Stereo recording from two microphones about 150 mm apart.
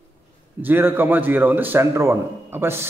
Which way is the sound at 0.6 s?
15° right (ahead or behind).